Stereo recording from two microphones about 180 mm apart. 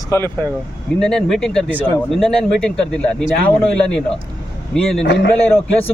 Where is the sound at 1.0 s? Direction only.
5° left (ahead or behind).